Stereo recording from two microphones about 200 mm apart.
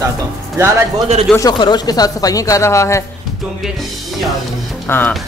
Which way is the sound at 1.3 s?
20° left (ahead or behind).